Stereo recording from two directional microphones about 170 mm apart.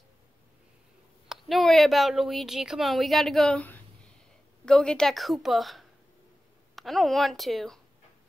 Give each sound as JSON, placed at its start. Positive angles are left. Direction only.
{"t": 1.3, "sound": "speech", "side_deg": 0}